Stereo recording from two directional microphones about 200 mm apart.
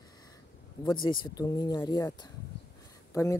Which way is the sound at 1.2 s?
20° left (ahead or behind).